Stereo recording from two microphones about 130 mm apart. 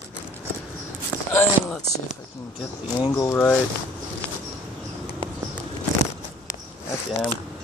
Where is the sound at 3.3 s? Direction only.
10° left (ahead or behind).